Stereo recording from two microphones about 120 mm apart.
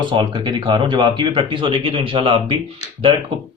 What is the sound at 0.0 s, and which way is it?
Speech, 40° right (ahead or behind).